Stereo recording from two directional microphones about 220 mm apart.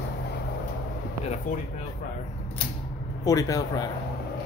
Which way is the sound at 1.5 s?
35° left (ahead or behind).